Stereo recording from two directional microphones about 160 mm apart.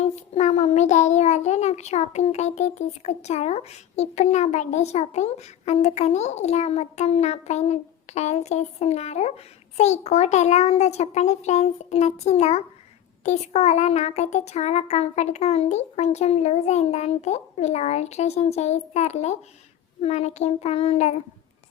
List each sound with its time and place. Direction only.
0.0 s a child's voice: 45° left (ahead or behind)
20.0 s child singing: 40° left (ahead or behind)